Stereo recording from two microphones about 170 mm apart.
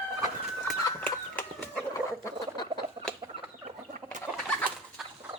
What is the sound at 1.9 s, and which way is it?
Duck, 20° left (ahead or behind).